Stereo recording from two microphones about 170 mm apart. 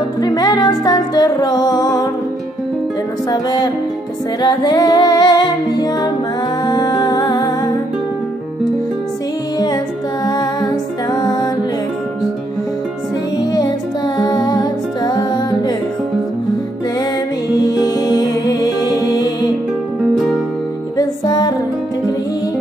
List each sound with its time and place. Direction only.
0.2 s music: 25° left (ahead or behind)
3.3 s music: 20° left (ahead or behind)
10.2 s music: 25° left (ahead or behind)
13.4 s music: 25° left (ahead or behind)
17.6 s music: 25° left (ahead or behind)
21.0 s music: 20° left (ahead or behind)